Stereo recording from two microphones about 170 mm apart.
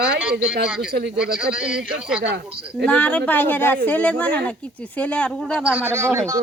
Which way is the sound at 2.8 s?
5° left (ahead or behind).